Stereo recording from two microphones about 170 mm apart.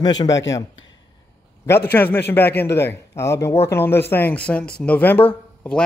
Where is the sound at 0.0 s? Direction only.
25° left (ahead or behind).